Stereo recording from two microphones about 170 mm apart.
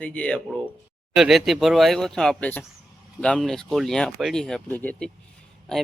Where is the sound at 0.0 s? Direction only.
5° left (ahead or behind).